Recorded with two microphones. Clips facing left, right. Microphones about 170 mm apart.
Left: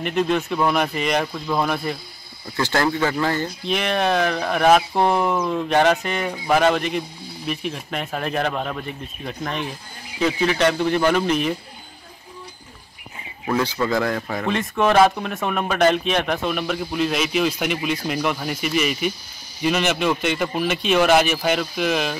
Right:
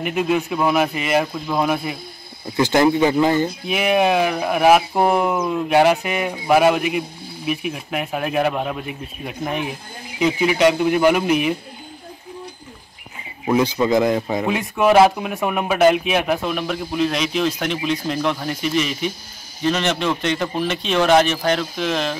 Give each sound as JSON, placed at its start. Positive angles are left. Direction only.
{"t": 0.0, "sound": "speech", "side_deg": -5}
{"t": 2.4, "sound": "speech", "side_deg": -20}
{"t": 3.6, "sound": "speech", "side_deg": -5}
{"t": 13.5, "sound": "speech", "side_deg": -20}
{"t": 14.5, "sound": "a man's voice", "side_deg": -10}